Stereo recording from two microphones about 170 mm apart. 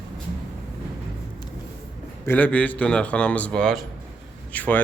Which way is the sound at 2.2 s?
10° left (ahead or behind).